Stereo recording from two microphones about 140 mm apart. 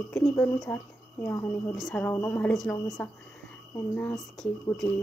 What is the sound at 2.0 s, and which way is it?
Speech, 10° left (ahead or behind).